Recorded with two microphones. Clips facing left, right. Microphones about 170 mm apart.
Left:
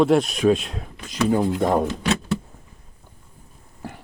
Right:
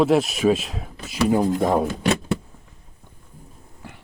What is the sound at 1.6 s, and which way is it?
Speech, 5° right (ahead or behind).